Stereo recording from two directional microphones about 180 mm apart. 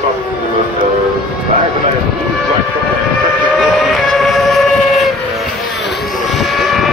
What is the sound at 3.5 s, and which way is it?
Train, centre (ahead or behind).